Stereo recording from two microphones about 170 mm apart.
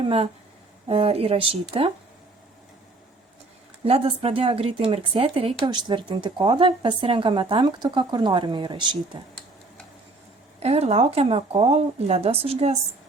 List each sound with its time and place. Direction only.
0.0 s speech: 35° right (ahead or behind)
3.8 s speech: 35° right (ahead or behind)
10.6 s speech: 40° right (ahead or behind)